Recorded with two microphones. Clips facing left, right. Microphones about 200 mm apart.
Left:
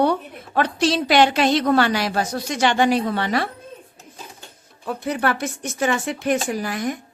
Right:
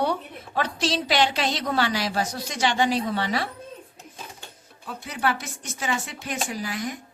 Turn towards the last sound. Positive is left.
turn(degrees=55)  # may be behind; listen again after turning